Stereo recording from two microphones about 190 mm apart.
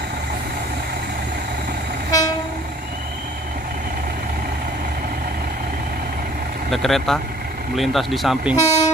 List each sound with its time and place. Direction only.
6.7 s speech: centre (ahead or behind)
8.5 s speech: 15° left (ahead or behind)